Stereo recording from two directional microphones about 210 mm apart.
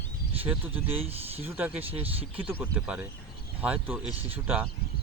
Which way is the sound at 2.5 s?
5° right (ahead or behind).